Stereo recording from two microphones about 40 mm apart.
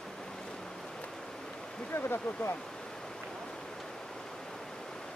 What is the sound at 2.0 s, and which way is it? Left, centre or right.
Speech, left.